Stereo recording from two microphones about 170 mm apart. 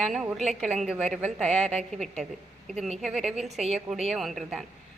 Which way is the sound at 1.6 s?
40° right (ahead or behind).